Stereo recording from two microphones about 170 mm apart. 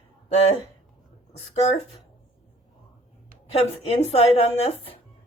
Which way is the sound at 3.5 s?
40° left (ahead or behind).